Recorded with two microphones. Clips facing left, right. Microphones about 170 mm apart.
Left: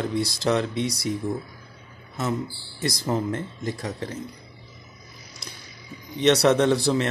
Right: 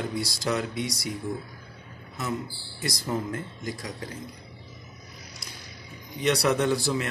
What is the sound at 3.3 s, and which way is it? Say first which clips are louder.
Speech: left 4 dB; 30° left (ahead or behind).